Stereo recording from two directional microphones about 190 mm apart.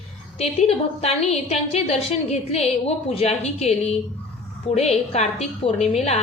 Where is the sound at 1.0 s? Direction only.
35° left (ahead or behind).